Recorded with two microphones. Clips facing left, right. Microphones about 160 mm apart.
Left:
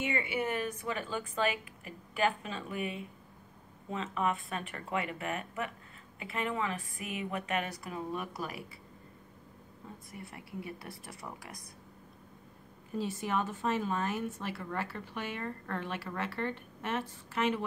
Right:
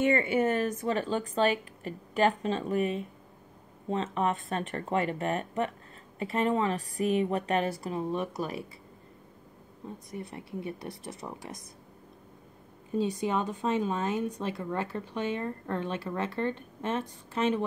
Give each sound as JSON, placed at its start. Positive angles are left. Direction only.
{"t": 0.0, "sound": "a woman's voice", "side_deg": -50}
{"t": 10.1, "sound": "speech", "side_deg": -25}
{"t": 12.9, "sound": "speech", "side_deg": -20}